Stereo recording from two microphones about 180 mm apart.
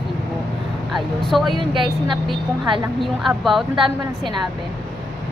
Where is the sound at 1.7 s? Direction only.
25° right (ahead or behind).